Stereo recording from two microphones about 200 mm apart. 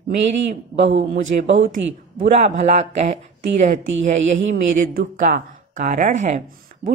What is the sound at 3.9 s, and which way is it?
A woman's voice, 70° right (ahead or behind).